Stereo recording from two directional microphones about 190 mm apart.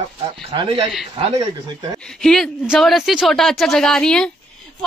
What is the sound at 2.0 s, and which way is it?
A woman's voice, 5° left (ahead or behind).